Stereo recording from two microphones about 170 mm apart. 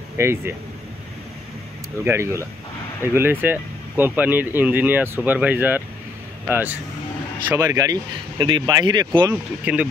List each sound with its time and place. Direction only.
0.2 s speech: 15° right (ahead or behind)
2.0 s speech: 15° right (ahead or behind)
7.5 s speech: 20° right (ahead or behind)
9.3 s speech: 10° right (ahead or behind)